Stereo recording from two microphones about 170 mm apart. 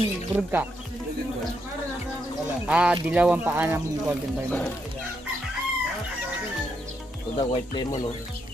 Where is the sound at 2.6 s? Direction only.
5° right (ahead or behind).